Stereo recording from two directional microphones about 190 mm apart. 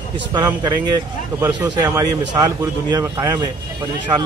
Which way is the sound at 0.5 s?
15° right (ahead or behind).